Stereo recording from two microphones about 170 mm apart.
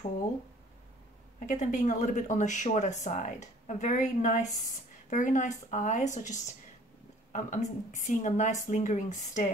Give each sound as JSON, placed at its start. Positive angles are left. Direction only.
{"t": 1.4, "sound": "speech", "side_deg": 45}